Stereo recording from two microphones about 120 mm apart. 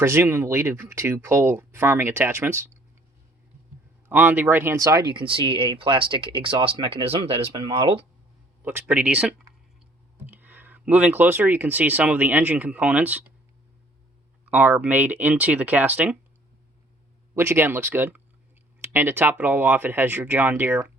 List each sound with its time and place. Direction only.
0.0 s speech: 20° right (ahead or behind)
4.1 s speech: 15° right (ahead or behind); by 8.0 s 50° right (ahead or behind)
8.6 s speech: 15° right (ahead or behind)
14.5 s speech: 15° right (ahead or behind)
17.3 s speech: 20° right (ahead or behind)